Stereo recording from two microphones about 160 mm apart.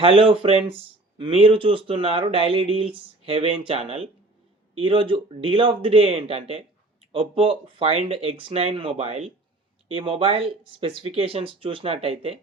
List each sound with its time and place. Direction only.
0.0 s speech: 35° right (ahead or behind)